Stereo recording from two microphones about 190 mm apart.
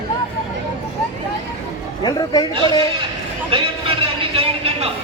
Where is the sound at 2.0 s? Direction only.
20° left (ahead or behind).